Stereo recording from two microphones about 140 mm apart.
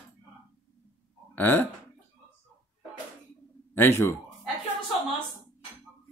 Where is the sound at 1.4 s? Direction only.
15° left (ahead or behind).